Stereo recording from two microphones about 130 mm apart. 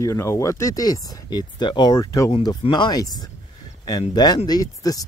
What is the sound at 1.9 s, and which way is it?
Speech, 25° left (ahead or behind).